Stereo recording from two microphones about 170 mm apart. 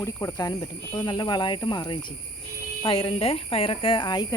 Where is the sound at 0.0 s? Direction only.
20° left (ahead or behind).